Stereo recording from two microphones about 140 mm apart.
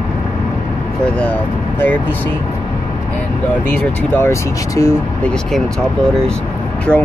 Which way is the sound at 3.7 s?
15° left (ahead or behind).